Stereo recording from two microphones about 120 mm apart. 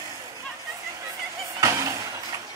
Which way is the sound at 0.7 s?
25° right (ahead or behind).